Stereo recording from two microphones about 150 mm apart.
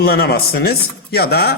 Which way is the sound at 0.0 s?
90° left.